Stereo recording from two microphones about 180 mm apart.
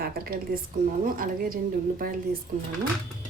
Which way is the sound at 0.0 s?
55° right (ahead or behind).